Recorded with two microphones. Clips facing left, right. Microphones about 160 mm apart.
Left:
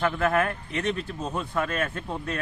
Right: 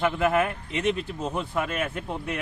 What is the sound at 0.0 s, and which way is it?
Speech, 15° right (ahead or behind).